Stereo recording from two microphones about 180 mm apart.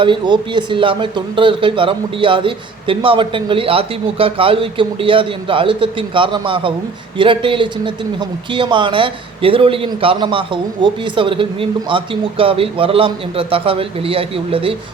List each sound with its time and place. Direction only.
0.0 s a man's voice: 25° right (ahead or behind)